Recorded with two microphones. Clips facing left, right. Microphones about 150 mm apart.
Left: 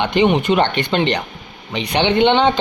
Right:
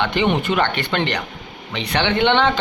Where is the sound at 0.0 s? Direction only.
20° left (ahead or behind).